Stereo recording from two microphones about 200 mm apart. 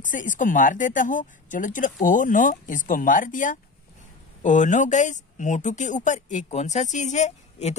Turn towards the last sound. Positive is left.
turn(degrees=35)  # may be behind; listen again after turning